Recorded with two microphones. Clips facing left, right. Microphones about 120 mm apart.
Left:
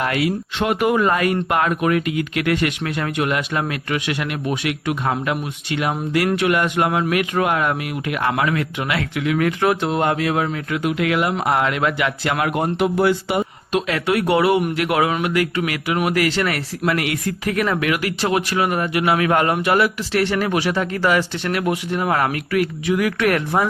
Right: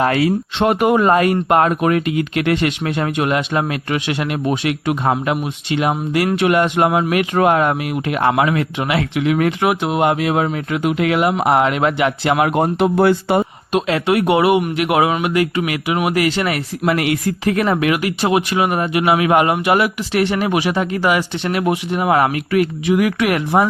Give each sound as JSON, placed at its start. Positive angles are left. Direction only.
{"t": 0.0, "sound": "speech", "side_deg": -35}
{"t": 13.0, "sound": "speech", "side_deg": -55}
{"t": 13.7, "sound": "speech", "side_deg": -25}